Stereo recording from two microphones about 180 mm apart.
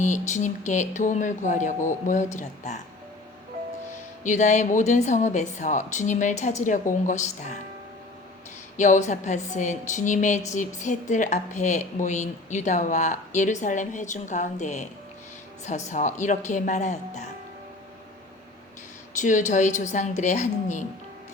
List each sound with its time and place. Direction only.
0.0 s a woman's voice: 40° left (ahead or behind)
4.2 s a woman's voice: 40° left (ahead or behind)
8.8 s a woman's voice: 40° left (ahead or behind)
19.2 s a woman's voice: 45° left (ahead or behind)